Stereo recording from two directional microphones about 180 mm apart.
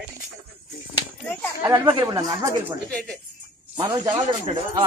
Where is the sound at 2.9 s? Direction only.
5° left (ahead or behind).